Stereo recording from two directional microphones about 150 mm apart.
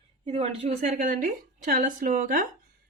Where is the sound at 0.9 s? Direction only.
55° right (ahead or behind).